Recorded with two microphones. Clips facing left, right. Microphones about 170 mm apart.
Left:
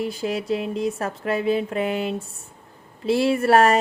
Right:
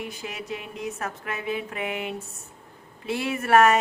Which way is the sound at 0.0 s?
35° left (ahead or behind).